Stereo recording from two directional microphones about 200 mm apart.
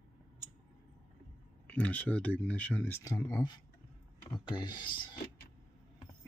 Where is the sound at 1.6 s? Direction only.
5° left (ahead or behind); by 5.2 s 25° left (ahead or behind).